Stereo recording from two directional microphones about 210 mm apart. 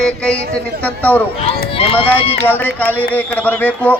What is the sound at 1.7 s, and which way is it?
Speech, 25° left (ahead or behind).